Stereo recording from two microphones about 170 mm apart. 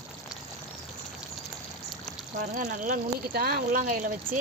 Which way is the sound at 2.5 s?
50° right (ahead or behind).